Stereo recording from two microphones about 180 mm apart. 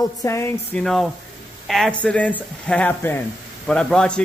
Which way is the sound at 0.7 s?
Centre (ahead or behind).